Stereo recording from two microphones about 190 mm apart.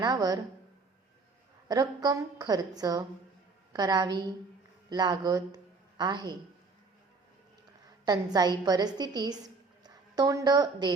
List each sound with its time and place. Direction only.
0.0 s a woman's voice: 20° right (ahead or behind)
1.6 s a woman's voice: 20° right (ahead or behind)
8.0 s a woman's voice: 20° right (ahead or behind)